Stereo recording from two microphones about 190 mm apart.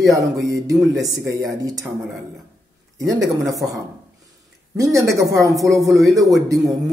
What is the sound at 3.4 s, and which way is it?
A man's voice, 15° right (ahead or behind).